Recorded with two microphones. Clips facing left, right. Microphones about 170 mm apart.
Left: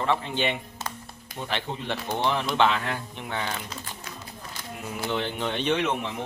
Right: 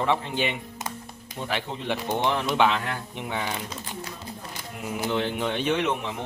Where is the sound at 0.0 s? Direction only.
15° right (ahead or behind).